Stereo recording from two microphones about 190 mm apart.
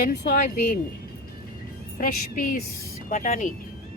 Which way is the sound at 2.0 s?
45° left (ahead or behind).